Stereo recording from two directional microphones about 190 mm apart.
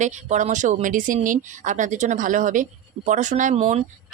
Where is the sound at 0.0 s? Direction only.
40° right (ahead or behind).